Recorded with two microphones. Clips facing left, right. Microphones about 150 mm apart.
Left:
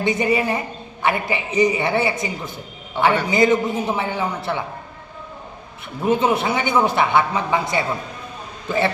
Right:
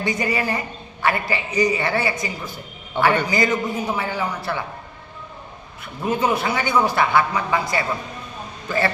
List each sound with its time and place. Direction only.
0.0 s a man's voice: 25° left (ahead or behind)
6.1 s a man's voice: 25° left (ahead or behind)